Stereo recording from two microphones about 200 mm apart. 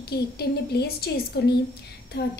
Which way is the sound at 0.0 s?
55° left (ahead or behind).